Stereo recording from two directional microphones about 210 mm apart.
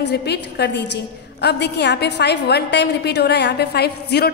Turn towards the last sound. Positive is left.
turn(degrees=50)  # may be behind; listen again after turning